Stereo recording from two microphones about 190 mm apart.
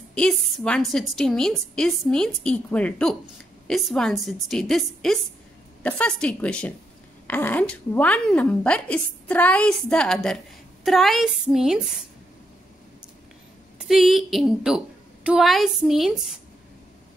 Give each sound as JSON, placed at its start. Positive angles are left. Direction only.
{"t": 0.1, "sound": "a woman's voice", "side_deg": 5}
{"t": 13.7, "sound": "a woman's voice", "side_deg": 0}